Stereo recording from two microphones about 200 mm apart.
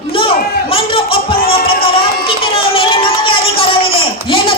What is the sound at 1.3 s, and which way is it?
Music, 50° left (ahead or behind).